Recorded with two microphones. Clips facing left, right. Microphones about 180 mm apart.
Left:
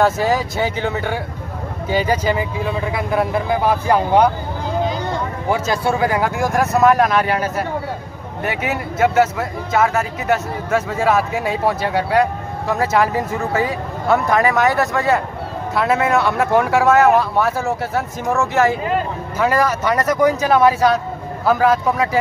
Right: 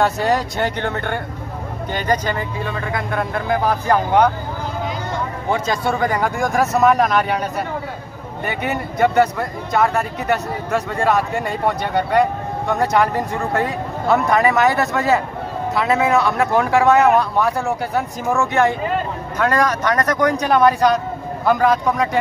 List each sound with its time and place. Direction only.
0.0 s speech: centre (ahead or behind)
5.5 s speech: 5° left (ahead or behind)